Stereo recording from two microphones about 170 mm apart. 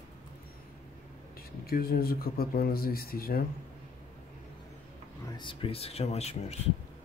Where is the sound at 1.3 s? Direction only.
60° left (ahead or behind).